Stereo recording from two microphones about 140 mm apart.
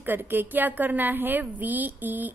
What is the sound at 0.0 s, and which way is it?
A woman's voice, 15° right (ahead or behind).